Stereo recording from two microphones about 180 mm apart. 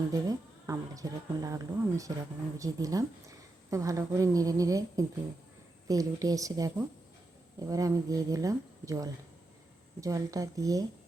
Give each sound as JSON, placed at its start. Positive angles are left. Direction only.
{"t": 0.1, "sound": "a woman's voice", "side_deg": -20}